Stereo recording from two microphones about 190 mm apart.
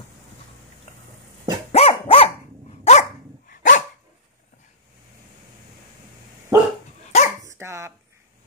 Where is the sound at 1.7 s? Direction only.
30° left (ahead or behind).